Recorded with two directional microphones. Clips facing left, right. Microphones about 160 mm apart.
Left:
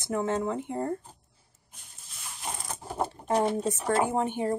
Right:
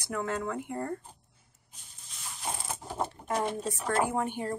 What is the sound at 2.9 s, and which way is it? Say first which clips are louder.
Speech: left 5 dB; 30° left (ahead or behind).